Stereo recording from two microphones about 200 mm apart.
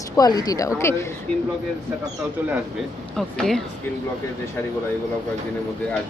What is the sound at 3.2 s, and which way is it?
Speech, centre (ahead or behind).